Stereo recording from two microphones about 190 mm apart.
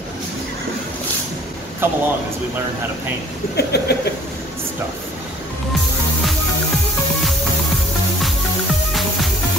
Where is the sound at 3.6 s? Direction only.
55° left (ahead or behind).